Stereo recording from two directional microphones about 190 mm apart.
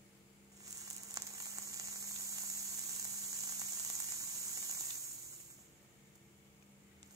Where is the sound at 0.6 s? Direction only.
15° right (ahead or behind).